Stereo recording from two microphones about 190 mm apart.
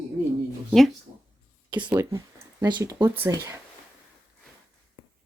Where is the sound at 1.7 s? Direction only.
25° right (ahead or behind).